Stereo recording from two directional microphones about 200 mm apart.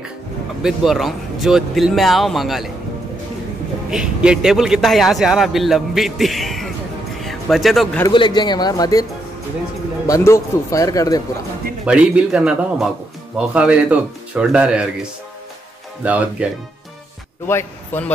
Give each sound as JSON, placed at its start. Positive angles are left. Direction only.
{"t": 0.6, "sound": "a man's voice", "side_deg": 0}
{"t": 3.9, "sound": "a man's voice", "side_deg": -5}
{"t": 7.2, "sound": "a sound", "side_deg": 0}
{"t": 8.1, "sound": "speech", "side_deg": 25}
{"t": 10.0, "sound": "a man's voice", "side_deg": 15}
{"t": 11.8, "sound": "a man's voice", "side_deg": -5}
{"t": 16.0, "sound": "speech", "side_deg": -5}
{"t": 17.5, "sound": "a man's voice", "side_deg": 10}